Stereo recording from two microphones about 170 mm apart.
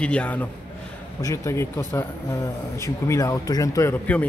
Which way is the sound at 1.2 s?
20° left (ahead or behind).